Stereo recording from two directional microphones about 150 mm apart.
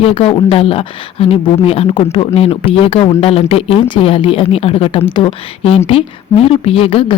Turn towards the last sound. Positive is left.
turn(degrees=35)  # may be behind; listen again after turning